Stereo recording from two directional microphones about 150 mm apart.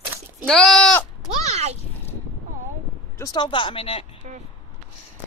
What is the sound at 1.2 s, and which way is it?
Speech, 45° right (ahead or behind).